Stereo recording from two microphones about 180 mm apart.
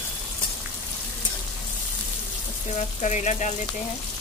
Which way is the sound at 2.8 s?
40° left (ahead or behind).